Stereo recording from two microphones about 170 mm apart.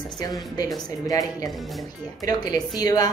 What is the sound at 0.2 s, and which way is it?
A woman's voice, 20° left (ahead or behind).